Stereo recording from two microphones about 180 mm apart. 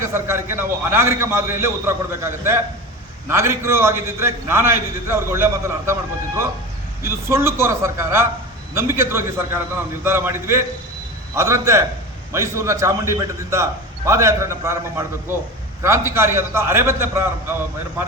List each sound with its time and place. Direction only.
0.0 s a man's voice: 15° right (ahead or behind)
7.0 s a man's voice: 15° right (ahead or behind)